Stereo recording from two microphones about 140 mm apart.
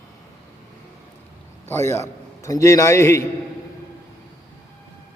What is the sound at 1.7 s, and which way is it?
A man's voice, 15° left (ahead or behind).